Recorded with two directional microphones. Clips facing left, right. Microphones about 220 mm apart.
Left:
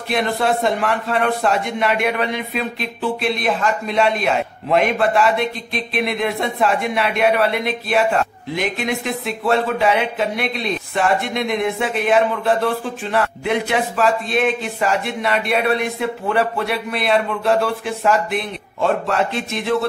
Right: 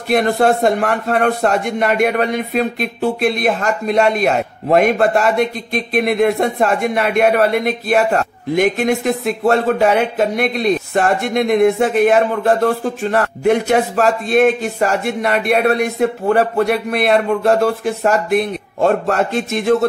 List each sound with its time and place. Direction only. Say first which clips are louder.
0.1 s a man's voice: right 6 dB; 45° right (ahead or behind)